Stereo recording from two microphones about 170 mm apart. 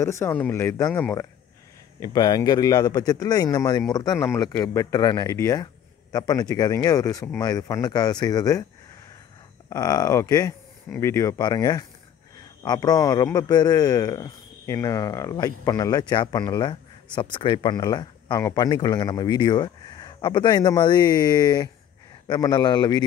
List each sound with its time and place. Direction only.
0.0 s a man's voice: 15° left (ahead or behind)
9.7 s a man's voice: 20° left (ahead or behind)